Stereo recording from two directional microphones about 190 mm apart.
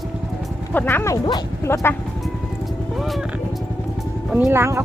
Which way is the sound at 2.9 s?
Centre (ahead or behind).